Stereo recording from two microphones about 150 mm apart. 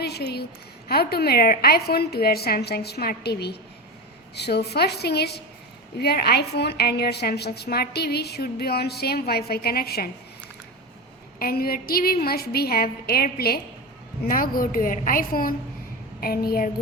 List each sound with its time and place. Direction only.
0.0 s a woman's voice: 90° left
11.3 s a woman's voice: 85° left
14.3 s a woman's voice: 70° left (ahead or behind)
16.2 s a woman's voice: 85° left